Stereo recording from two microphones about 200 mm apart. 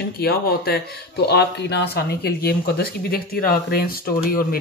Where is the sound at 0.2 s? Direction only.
50° left (ahead or behind).